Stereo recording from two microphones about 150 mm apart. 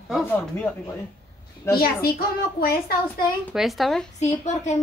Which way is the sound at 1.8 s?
90° left.